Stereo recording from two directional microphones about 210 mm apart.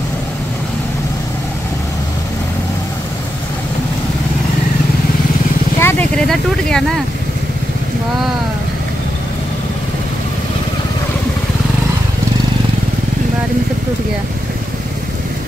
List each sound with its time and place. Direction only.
5.8 s vehicle: 10° left (ahead or behind)